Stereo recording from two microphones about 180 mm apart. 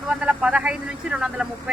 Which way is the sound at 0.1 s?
5° right (ahead or behind).